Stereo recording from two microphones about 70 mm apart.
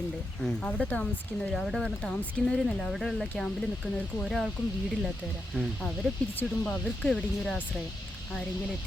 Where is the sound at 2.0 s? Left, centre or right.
Centre.